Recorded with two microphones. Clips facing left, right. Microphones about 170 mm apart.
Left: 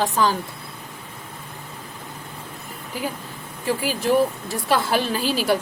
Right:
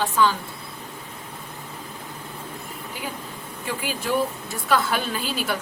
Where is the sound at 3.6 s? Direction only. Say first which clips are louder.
Left 6 dB; 35° left (ahead or behind).